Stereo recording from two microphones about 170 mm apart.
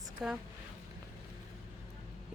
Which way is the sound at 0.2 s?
Centre (ahead or behind).